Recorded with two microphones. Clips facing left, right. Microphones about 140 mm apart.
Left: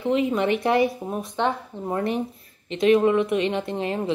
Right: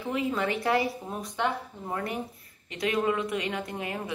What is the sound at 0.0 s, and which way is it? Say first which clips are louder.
Speech: left 7 dB; 20° left (ahead or behind).